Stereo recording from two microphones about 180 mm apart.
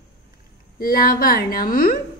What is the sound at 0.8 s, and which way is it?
A woman's voice, 55° left (ahead or behind).